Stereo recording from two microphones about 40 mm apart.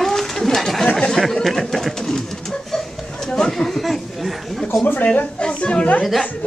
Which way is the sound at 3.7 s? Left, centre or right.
Centre.